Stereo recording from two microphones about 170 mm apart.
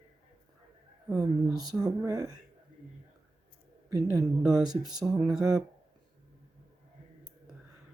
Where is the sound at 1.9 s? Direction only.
20° right (ahead or behind).